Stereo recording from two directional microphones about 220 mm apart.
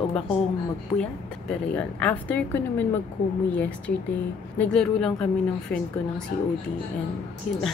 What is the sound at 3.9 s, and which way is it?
Speech, 45° left (ahead or behind).